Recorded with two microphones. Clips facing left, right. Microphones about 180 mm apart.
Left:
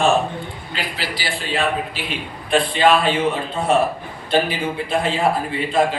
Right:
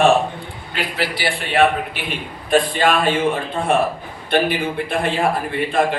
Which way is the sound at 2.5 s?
50° right (ahead or behind).